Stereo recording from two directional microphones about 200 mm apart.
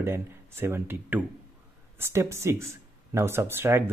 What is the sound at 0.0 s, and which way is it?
Speech, 10° right (ahead or behind).